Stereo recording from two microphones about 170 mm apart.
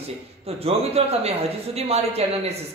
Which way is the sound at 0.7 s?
35° right (ahead or behind).